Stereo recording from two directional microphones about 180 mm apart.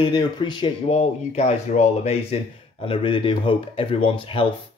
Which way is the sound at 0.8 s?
40° left (ahead or behind).